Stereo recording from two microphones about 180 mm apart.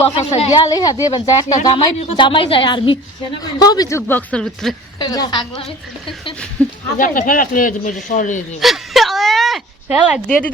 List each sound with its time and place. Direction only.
0.3 s speech: 35° left (ahead or behind)
0.7 s a woman's voice: 20° left (ahead or behind)
4.9 s a woman's voice: 20° left (ahead or behind)
6.6 s speech: 5° left (ahead or behind)
7.0 s speech: 50° left (ahead or behind)
8.6 s a sound: centre (ahead or behind)